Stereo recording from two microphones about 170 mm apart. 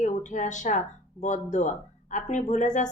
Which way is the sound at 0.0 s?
45° left (ahead or behind).